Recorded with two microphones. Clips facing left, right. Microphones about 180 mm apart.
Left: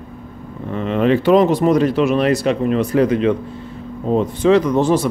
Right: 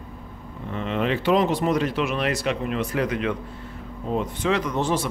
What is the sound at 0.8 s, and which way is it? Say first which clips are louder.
Speech: left 9 dB; 45° left (ahead or behind).